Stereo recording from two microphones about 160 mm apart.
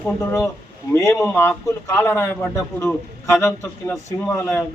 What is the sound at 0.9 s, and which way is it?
A man's voice, 20° left (ahead or behind).